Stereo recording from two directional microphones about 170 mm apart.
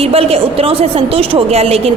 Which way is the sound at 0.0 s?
35° right (ahead or behind).